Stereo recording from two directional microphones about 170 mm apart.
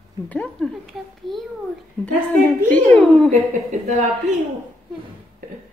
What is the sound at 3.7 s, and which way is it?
Speech, 45° right (ahead or behind).